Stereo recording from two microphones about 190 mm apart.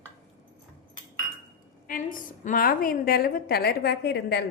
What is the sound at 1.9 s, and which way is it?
A woman's voice, 45° left (ahead or behind).